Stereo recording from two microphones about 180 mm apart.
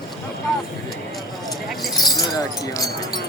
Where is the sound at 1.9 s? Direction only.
20° left (ahead or behind).